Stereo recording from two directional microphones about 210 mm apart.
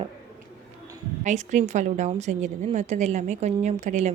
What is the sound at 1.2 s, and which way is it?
A woman's voice, 35° right (ahead or behind).